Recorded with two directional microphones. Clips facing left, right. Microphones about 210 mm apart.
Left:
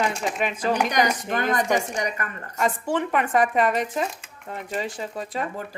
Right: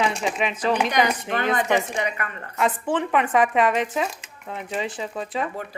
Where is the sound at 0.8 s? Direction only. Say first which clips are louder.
Right 1 dB; 40° left (ahead or behind).